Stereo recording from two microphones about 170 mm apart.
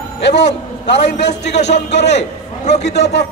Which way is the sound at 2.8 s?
90° left.